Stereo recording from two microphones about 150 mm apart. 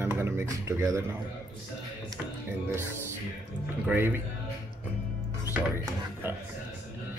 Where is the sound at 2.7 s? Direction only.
15° right (ahead or behind).